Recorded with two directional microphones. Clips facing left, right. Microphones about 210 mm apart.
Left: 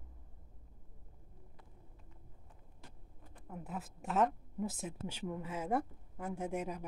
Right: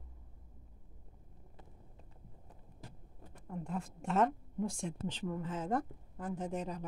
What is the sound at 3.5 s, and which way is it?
A woman's voice, 5° left (ahead or behind).